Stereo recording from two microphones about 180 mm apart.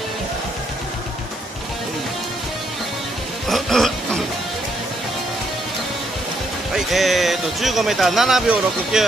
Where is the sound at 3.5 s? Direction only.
Centre (ahead or behind).